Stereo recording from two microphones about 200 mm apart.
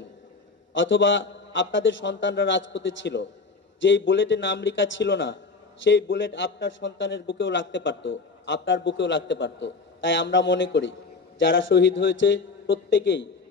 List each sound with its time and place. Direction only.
0.7 s a man's voice: 65° left (ahead or behind)